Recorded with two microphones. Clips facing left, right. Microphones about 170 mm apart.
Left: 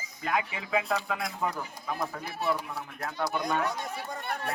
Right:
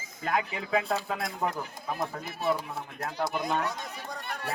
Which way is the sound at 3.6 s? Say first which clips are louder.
Left 2 dB; centre (ahead or behind).